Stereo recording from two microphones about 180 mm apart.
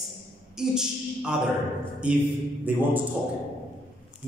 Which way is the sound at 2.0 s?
5° right (ahead or behind).